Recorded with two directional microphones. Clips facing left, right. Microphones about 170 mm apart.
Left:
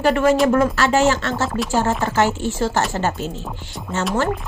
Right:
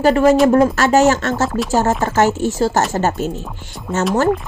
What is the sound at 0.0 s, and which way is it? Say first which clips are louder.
Speech: right 4 dB; 40° right (ahead or behind).